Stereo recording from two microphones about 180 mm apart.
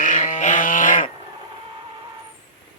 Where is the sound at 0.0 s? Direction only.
45° left (ahead or behind).